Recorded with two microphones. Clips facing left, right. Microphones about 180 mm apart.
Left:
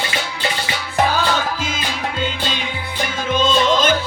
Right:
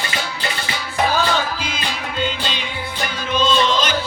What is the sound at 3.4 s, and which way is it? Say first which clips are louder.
Music: left 1 dB; 50° left (ahead or behind).